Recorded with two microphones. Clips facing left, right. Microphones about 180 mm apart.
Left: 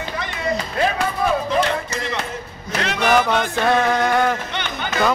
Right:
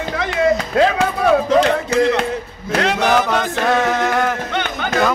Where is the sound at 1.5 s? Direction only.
75° right (ahead or behind).